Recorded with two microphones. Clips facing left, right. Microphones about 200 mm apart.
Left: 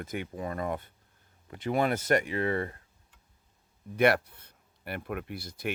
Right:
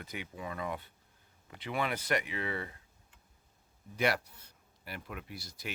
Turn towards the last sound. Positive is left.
turn(degrees=55)  # may be behind; listen again after turning